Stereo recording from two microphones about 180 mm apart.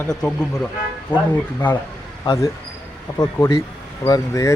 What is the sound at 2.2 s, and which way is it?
Speech, 20° left (ahead or behind).